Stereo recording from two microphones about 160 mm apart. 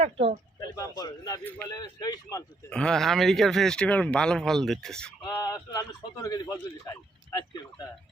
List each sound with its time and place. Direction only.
0.0 s speech: 40° right (ahead or behind)
0.8 s speech: 25° left (ahead or behind)
2.6 s speech: 5° left (ahead or behind)
5.3 s a sound: 25° left (ahead or behind)
5.5 s speech: 20° left (ahead or behind)